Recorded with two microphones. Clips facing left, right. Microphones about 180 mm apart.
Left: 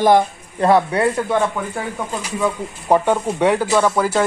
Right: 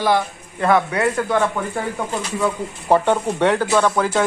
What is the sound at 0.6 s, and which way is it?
Speech, 30° left (ahead or behind).